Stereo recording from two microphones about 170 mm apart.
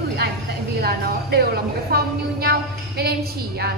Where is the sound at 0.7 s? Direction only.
70° right (ahead or behind).